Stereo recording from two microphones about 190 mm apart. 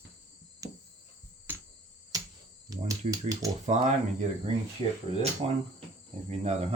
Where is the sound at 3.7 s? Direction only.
40° right (ahead or behind).